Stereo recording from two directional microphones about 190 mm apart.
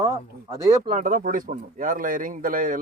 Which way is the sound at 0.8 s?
40° right (ahead or behind).